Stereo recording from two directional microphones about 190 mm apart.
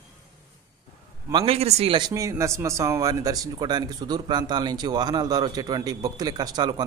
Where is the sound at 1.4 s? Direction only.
30° right (ahead or behind).